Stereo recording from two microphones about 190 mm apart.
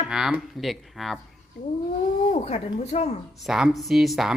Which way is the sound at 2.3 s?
35° left (ahead or behind).